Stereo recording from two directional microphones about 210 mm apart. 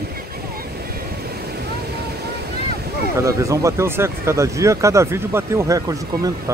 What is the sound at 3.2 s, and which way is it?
Speech, 15° right (ahead or behind).